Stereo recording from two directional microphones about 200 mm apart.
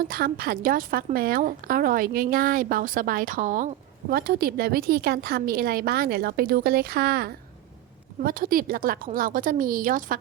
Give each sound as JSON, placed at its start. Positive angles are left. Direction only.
{"t": 0.0, "sound": "a woman's voice", "side_deg": -45}